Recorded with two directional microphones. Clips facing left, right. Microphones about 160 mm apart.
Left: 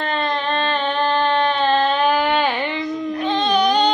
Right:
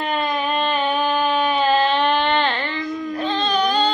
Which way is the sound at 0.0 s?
10° right (ahead or behind).